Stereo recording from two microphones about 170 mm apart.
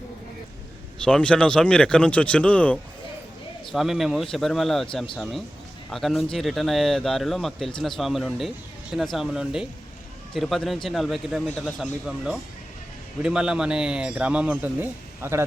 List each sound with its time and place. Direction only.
1.0 s a man's voice: 5° left (ahead or behind); by 15.4 s 15° right (ahead or behind)